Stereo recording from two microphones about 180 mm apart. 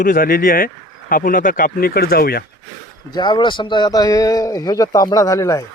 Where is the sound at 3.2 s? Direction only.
25° left (ahead or behind).